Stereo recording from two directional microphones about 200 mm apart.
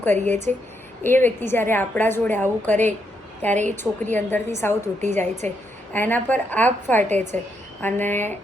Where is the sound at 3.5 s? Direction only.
35° right (ahead or behind).